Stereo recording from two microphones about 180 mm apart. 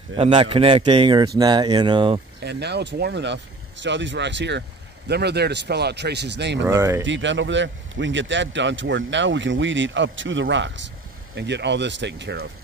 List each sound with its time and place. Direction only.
0.1 s a man's voice: 30° right (ahead or behind)
2.4 s speech: 70° right (ahead or behind)
3.8 s speech: 85° right
6.6 s speech: 15° right (ahead or behind)
7.0 s a man's voice: 90° right
11.3 s speech: 75° right (ahead or behind)